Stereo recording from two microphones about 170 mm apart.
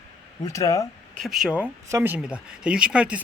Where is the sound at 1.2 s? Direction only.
Centre (ahead or behind).